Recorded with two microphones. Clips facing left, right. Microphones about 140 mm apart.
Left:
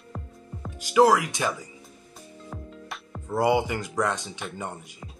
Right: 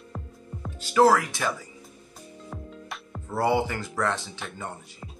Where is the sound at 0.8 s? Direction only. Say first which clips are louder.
Even; 15° left (ahead or behind).